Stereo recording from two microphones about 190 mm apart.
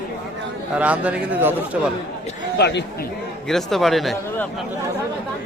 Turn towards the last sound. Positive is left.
turn(degrees=0)  # may be behind; listen again after turning